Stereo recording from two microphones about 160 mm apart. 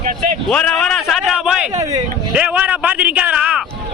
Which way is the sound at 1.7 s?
20° right (ahead or behind).